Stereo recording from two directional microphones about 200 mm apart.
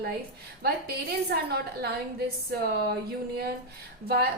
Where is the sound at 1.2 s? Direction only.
50° right (ahead or behind).